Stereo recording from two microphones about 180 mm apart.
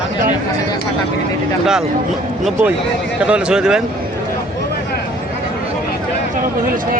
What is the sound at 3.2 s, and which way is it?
Speech, 5° right (ahead or behind).